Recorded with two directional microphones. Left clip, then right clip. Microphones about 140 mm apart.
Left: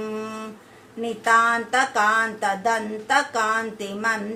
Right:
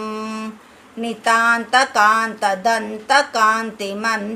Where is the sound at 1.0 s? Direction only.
25° right (ahead or behind).